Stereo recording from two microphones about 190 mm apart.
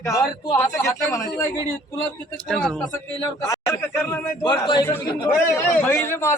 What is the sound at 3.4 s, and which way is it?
Speech, 15° left (ahead or behind).